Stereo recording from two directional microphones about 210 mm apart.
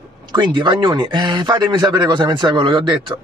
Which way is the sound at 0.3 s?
20° right (ahead or behind).